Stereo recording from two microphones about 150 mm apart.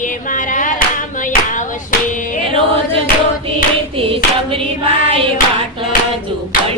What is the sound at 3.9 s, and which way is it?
Hands, 40° right (ahead or behind).